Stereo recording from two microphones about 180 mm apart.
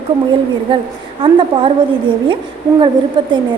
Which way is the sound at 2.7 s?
30° right (ahead or behind).